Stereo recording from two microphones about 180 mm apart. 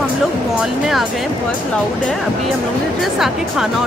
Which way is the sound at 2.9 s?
Centre (ahead or behind).